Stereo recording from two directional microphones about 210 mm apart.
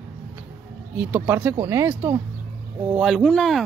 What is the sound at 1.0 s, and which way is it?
Speech, 10° right (ahead or behind).